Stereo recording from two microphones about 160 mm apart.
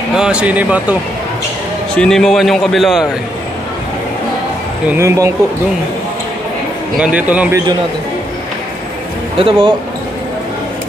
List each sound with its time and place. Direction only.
0.1 s speech: 5° right (ahead or behind)
2.0 s a man's voice: 5° left (ahead or behind)
4.8 s speech: 15° right (ahead or behind)
7.0 s speech: 10° right (ahead or behind)
9.4 s speech: 35° right (ahead or behind)